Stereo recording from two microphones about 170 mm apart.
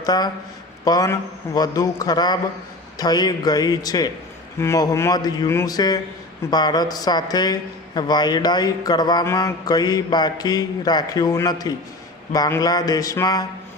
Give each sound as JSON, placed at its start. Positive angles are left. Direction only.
{"t": 0.0, "sound": "speech", "side_deg": 25}